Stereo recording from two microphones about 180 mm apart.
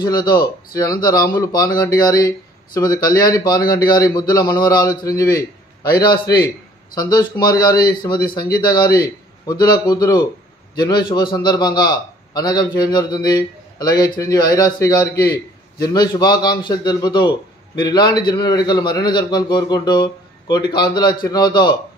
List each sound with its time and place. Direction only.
0.0 s a man's voice: 20° left (ahead or behind)